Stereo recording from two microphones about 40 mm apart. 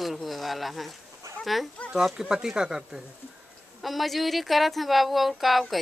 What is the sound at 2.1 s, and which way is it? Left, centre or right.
Speech, centre.